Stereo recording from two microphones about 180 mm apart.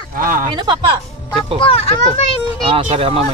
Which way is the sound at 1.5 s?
30° left (ahead or behind).